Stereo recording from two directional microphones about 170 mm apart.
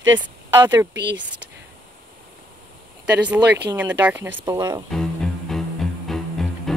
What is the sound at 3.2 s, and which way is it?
Speech, 10° right (ahead or behind).